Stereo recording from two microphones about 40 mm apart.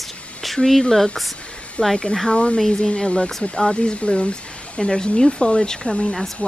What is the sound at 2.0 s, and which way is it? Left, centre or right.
Speech, centre.